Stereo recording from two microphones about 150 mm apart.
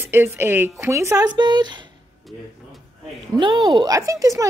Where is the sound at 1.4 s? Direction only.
30° right (ahead or behind).